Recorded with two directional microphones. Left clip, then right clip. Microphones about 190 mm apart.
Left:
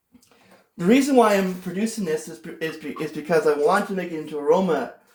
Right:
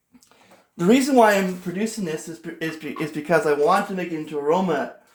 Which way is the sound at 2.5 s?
40° right (ahead or behind).